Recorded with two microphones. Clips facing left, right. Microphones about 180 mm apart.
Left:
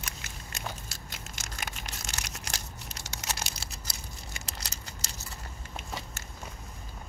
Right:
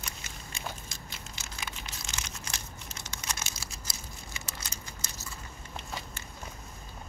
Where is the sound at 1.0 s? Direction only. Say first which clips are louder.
Left 1 dB; 45° left (ahead or behind).